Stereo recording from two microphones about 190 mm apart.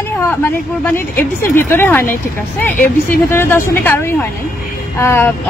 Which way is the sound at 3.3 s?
10° left (ahead or behind).